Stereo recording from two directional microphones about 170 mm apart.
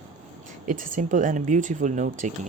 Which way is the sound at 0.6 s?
50° right (ahead or behind).